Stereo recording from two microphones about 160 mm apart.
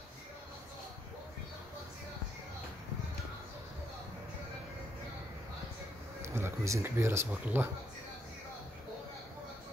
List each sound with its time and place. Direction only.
6.2 s speech: 15° right (ahead or behind)